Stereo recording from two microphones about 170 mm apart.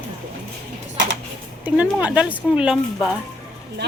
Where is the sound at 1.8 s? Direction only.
5° right (ahead or behind).